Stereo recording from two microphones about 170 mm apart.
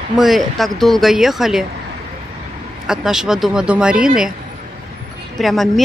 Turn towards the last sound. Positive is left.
turn(degrees=0)  # may be behind; listen again after turning